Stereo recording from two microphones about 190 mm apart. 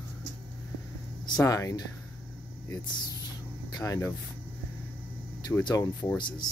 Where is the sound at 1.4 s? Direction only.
20° left (ahead or behind).